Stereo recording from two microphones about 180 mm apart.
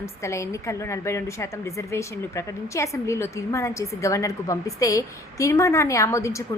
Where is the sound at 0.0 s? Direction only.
15° left (ahead or behind).